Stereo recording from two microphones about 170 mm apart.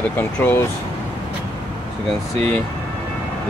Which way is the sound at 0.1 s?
10° left (ahead or behind).